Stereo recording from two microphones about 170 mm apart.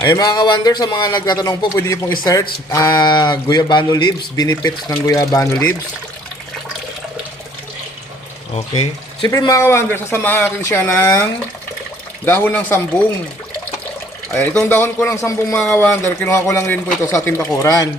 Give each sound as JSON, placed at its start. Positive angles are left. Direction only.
{"t": 0.0, "sound": "a man's voice", "side_deg": 20}
{"t": 8.7, "sound": "speech", "side_deg": 25}
{"t": 14.3, "sound": "speech", "side_deg": 15}